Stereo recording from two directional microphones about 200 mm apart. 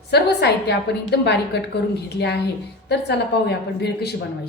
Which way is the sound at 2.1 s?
55° left (ahead or behind).